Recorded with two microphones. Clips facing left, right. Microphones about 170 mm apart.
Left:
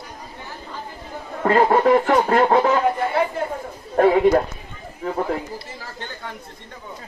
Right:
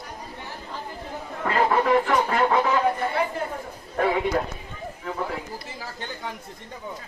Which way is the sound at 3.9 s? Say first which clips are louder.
Left 8 dB; 45° left (ahead or behind).